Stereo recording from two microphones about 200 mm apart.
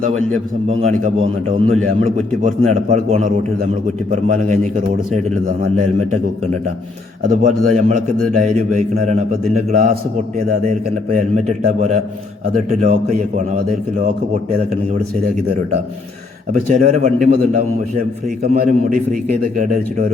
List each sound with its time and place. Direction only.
0.7 s a man's voice: 35° right (ahead or behind)
5.7 s a man's voice: 40° right (ahead or behind)
7.3 s a man's voice: 35° right (ahead or behind)
9.7 s a man's voice: 45° right (ahead or behind)
10.7 s a man's voice: 35° right (ahead or behind)
16.5 s a man's voice: 35° right (ahead or behind)
18.4 s a man's voice: 50° right (ahead or behind)